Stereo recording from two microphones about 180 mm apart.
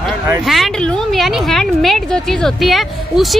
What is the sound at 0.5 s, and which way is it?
A woman's voice, centre (ahead or behind).